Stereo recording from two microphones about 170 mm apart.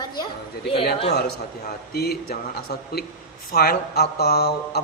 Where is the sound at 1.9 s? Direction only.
65° left (ahead or behind).